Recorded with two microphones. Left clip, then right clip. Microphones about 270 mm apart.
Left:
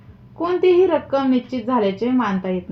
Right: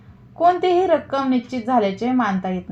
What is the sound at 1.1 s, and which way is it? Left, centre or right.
A woman's voice, right.